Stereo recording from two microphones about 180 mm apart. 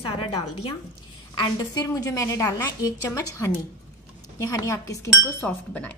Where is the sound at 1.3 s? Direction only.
20° left (ahead or behind).